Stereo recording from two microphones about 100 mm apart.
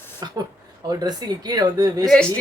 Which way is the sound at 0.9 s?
40° right (ahead or behind).